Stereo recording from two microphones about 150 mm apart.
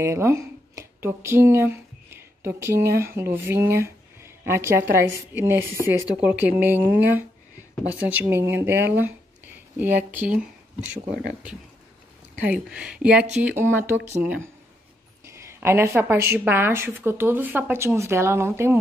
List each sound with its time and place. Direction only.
0.0 s a woman's voice: 20° right (ahead or behind)
12.4 s a woman's voice: 5° right (ahead or behind)